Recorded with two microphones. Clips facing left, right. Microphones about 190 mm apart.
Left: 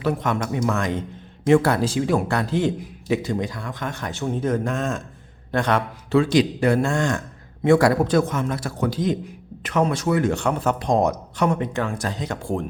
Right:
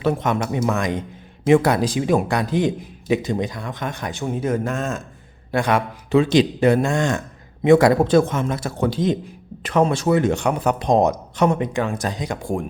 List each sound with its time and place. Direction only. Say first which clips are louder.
0.0 s a man's voice: right 2 dB; 25° right (ahead or behind)